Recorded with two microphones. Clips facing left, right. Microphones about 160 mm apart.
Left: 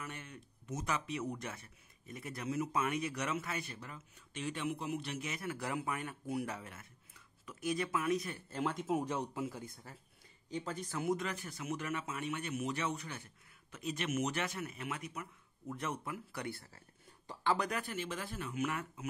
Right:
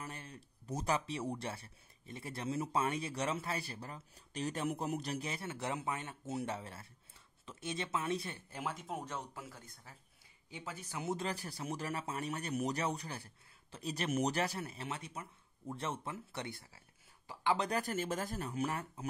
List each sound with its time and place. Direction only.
0.0 s speech: 35° right (ahead or behind)
8.5 s speech: 10° right (ahead or behind)
8.8 s speech: 10° left (ahead or behind)
10.5 s speech: 10° right (ahead or behind)
11.1 s speech: 30° right (ahead or behind); by 17.6 s 15° right (ahead or behind)
17.6 s speech: 40° right (ahead or behind)